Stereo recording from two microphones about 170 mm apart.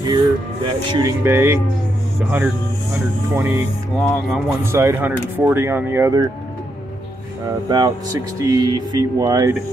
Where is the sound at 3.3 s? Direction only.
15° right (ahead or behind).